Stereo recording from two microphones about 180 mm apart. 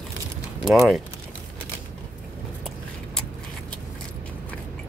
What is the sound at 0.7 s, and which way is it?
Speech, centre (ahead or behind).